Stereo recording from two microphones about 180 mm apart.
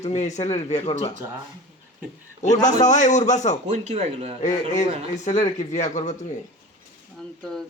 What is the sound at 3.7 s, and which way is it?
Speech, 40° right (ahead or behind).